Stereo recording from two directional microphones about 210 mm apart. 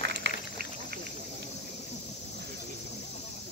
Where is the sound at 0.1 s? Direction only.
50° right (ahead or behind).